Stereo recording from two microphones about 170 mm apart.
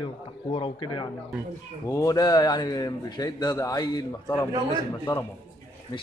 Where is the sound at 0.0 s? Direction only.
30° left (ahead or behind).